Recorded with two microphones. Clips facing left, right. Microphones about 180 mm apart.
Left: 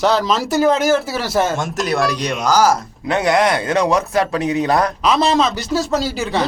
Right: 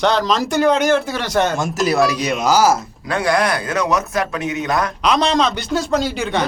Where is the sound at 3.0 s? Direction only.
20° left (ahead or behind).